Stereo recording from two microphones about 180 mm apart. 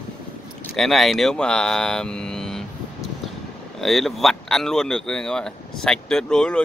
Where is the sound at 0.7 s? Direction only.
Centre (ahead or behind).